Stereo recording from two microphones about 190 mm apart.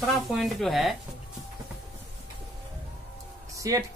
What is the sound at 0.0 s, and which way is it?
Speech, centre (ahead or behind).